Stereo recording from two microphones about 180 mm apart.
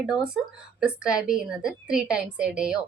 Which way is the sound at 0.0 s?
5° right (ahead or behind).